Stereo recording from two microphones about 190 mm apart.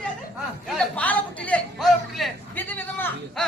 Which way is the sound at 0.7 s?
5° left (ahead or behind).